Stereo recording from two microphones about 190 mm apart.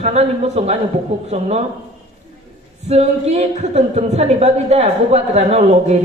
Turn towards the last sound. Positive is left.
turn(degrees=-35)  # may be behind; listen again after turning